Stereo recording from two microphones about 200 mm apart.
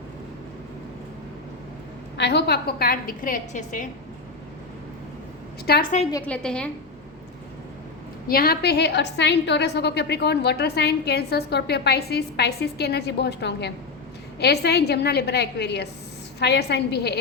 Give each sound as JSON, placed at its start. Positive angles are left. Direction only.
{"t": 2.1, "sound": "a woman's voice", "side_deg": 60}
{"t": 5.7, "sound": "a woman's voice", "side_deg": 50}
{"t": 6.2, "sound": "a woman's voice", "side_deg": 5}
{"t": 8.3, "sound": "a woman's voice", "side_deg": 50}